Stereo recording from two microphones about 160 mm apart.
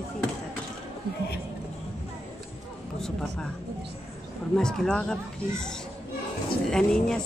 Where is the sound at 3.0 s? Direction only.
5° left (ahead or behind).